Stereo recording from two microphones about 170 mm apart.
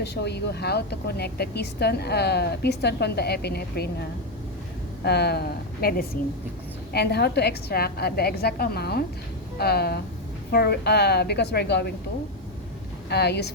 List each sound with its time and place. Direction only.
0.0 s a woman's voice: 75° left (ahead or behind)
5.0 s a woman's voice: 75° left (ahead or behind)
13.1 s a woman's voice: 75° left (ahead or behind)